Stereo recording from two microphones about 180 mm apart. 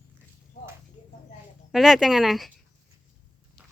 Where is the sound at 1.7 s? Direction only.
Centre (ahead or behind).